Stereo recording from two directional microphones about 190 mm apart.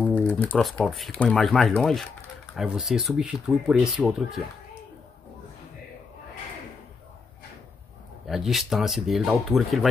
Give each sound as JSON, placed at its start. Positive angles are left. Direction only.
{"t": 0.0, "sound": "speech", "side_deg": 10}
{"t": 8.3, "sound": "speech", "side_deg": 0}